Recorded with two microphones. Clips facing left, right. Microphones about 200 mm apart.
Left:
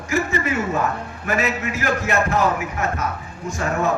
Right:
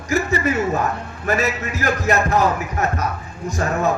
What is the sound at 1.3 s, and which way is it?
A man's voice, 40° right (ahead or behind).